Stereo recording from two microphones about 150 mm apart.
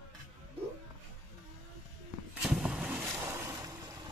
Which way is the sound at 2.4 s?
5° right (ahead or behind).